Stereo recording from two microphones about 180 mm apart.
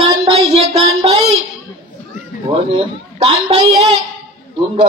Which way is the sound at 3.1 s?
35° right (ahead or behind).